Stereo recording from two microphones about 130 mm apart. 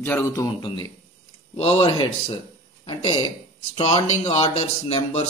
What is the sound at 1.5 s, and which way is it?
A man's voice, 50° left (ahead or behind).